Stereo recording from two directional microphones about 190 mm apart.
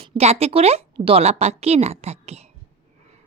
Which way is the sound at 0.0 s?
30° right (ahead or behind).